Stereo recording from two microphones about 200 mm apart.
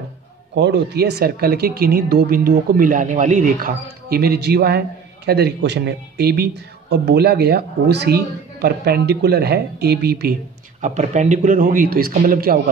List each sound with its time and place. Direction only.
0.6 s speech: 55° right (ahead or behind)
10.8 s speech: 35° right (ahead or behind)